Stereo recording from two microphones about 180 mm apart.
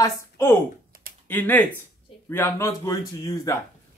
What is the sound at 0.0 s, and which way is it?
Speech, 15° left (ahead or behind).